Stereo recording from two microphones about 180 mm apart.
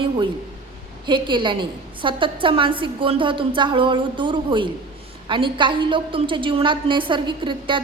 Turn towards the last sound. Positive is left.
turn(degrees=-25)  # may be behind; listen again after turning